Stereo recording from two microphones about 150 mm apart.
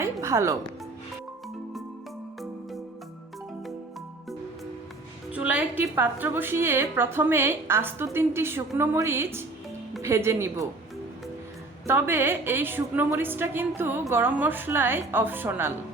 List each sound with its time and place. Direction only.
0.0 s music: 20° right (ahead or behind)
5.3 s a woman's voice: 10° right (ahead or behind)
11.9 s a woman's voice: 15° right (ahead or behind)